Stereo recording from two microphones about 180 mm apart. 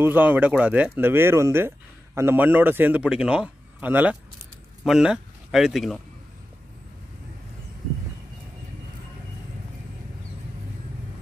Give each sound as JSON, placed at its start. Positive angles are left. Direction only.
{"t": 0.0, "sound": "a man's voice", "side_deg": -10}